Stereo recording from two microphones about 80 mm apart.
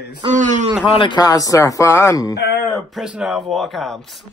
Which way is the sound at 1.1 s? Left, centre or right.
Left.